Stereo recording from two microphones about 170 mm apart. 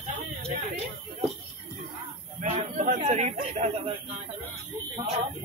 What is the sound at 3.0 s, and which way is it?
Speech, 40° right (ahead or behind).